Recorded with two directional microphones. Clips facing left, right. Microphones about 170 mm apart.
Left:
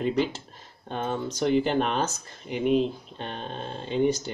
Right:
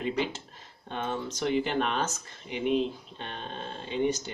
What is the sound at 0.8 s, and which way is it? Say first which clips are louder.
Speech: left 3 dB; 40° left (ahead or behind).